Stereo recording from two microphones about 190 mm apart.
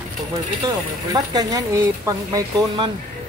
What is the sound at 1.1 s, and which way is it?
Speech, 20° right (ahead or behind).